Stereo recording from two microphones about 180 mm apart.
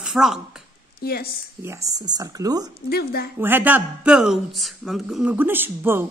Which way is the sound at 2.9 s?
60° left (ahead or behind).